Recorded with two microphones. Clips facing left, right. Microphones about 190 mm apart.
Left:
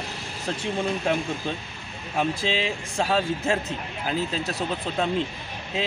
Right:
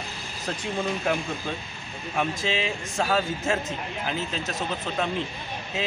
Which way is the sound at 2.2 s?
30° left (ahead or behind).